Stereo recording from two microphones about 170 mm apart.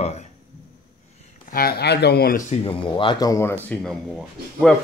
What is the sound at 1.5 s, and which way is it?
Speech, 65° left (ahead or behind).